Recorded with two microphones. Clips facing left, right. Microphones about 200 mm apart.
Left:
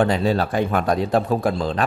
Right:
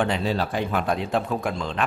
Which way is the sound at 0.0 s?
45° left (ahead or behind).